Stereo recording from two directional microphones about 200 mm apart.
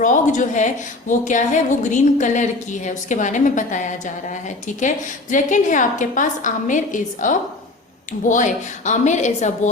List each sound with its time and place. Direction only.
0.0 s a woman's voice: 40° left (ahead or behind)